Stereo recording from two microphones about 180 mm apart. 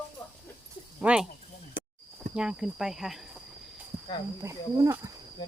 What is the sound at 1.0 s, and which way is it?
Speech, 5° right (ahead or behind).